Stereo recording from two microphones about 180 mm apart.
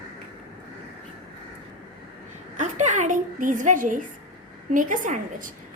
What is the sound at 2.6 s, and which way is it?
A woman's voice, 40° right (ahead or behind).